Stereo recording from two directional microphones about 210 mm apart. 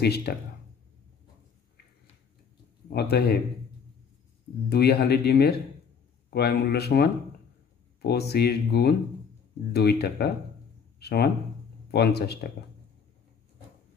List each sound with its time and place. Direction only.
0.0 s speech: 50° left (ahead or behind)
2.9 s speech: 50° left (ahead or behind)
4.6 s speech: 50° left (ahead or behind)